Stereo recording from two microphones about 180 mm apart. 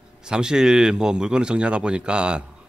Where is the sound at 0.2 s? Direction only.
5° right (ahead or behind).